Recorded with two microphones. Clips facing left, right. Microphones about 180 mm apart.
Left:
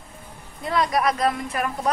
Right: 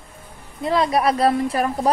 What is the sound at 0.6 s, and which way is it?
A woman's voice, 30° right (ahead or behind).